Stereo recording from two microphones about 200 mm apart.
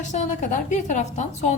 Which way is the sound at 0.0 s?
35° left (ahead or behind).